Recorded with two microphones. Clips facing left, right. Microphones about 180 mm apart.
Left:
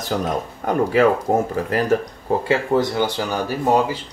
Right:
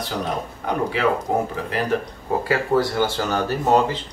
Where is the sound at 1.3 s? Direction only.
40° left (ahead or behind).